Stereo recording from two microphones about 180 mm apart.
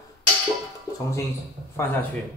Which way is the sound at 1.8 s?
15° left (ahead or behind).